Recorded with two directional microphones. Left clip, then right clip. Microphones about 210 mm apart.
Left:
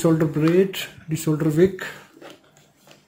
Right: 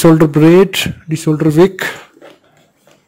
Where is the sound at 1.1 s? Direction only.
35° right (ahead or behind); by 1.9 s 55° right (ahead or behind).